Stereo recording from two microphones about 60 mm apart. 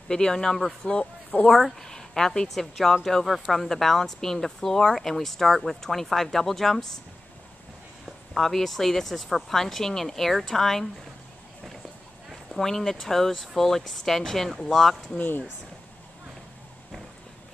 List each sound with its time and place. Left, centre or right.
0.1 s speech: centre
1.5 s a woman's voice: centre
8.4 s a woman's voice: centre
12.3 s a woman's voice: centre
15.1 s speech: left